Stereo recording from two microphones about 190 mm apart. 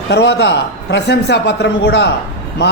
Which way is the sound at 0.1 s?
65° left (ahead or behind).